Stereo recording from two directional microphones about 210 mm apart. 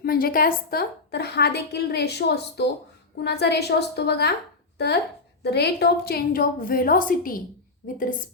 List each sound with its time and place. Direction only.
0.0 s a woman's voice: 45° left (ahead or behind)
5.4 s a woman's voice: 50° left (ahead or behind)